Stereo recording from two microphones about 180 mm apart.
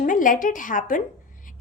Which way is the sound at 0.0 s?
45° left (ahead or behind).